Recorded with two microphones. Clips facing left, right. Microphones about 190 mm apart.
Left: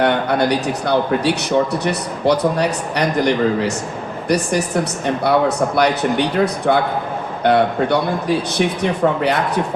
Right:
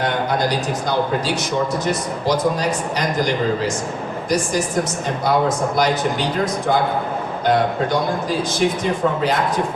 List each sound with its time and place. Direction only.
0.0 s a man's voice: 65° left (ahead or behind)